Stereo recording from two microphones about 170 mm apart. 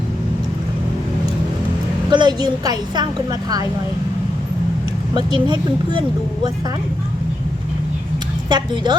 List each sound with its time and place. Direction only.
2.0 s a woman's voice: 25° right (ahead or behind)
5.1 s a woman's voice: 25° right (ahead or behind)
8.4 s a woman's voice: 25° right (ahead or behind)